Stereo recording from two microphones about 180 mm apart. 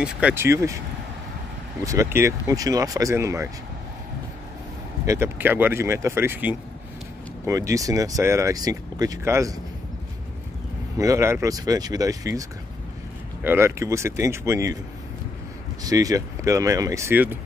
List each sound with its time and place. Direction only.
0.0 s speech: 10° right (ahead or behind)
1.9 s speech: 15° right (ahead or behind)
5.0 s speech: 15° right (ahead or behind)
11.0 s speech: 15° right (ahead or behind)
15.8 s speech: 20° right (ahead or behind)